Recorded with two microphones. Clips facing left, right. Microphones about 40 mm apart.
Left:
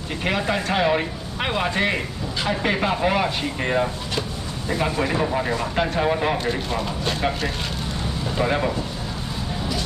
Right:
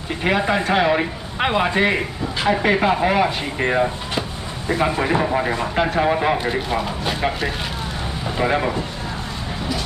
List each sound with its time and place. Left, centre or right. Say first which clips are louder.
0.2 s speech: right 4 dB; centre